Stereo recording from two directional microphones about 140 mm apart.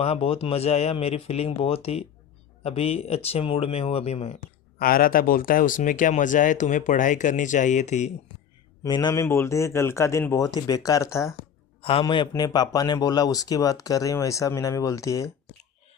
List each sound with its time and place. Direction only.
0.0 s speech: 45° left (ahead or behind)
4.8 s speech: 90° left; by 8.1 s 55° left (ahead or behind)
8.8 s speech: 30° left (ahead or behind)
9.2 s speech: 20° left (ahead or behind)
11.8 s a man's voice: 45° left (ahead or behind); by 15.3 s 25° left (ahead or behind)